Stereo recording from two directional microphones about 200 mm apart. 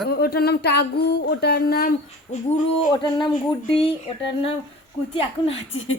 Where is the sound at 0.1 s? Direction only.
50° left (ahead or behind).